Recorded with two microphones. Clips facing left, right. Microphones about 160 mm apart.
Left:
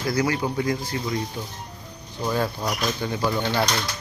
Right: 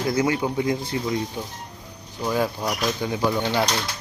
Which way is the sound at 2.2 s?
10° right (ahead or behind).